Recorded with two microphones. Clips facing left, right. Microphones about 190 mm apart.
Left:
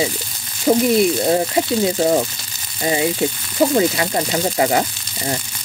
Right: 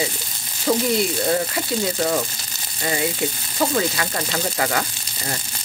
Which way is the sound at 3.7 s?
25° left (ahead or behind).